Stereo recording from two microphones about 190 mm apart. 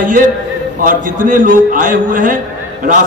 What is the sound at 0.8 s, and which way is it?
A man's voice, 45° right (ahead or behind).